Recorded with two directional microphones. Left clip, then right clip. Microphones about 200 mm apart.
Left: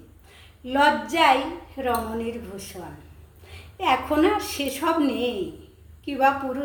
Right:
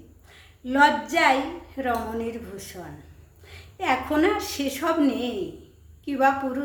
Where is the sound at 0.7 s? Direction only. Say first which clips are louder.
Right 1 dB; 20° right (ahead or behind).